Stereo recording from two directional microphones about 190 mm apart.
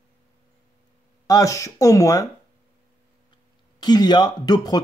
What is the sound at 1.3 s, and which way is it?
Speech, 15° left (ahead or behind).